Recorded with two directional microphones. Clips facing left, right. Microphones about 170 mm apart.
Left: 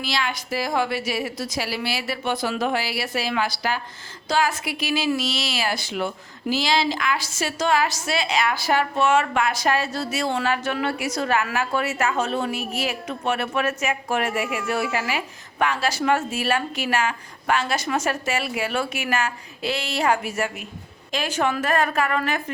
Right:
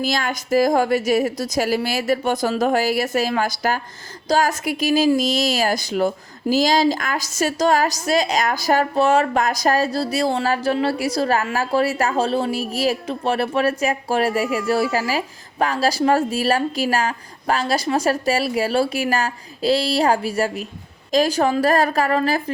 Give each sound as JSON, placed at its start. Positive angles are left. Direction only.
{"t": 0.0, "sound": "a woman's voice", "side_deg": -45}